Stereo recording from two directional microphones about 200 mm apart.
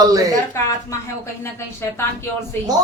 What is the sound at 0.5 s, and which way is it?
Speech, 15° left (ahead or behind).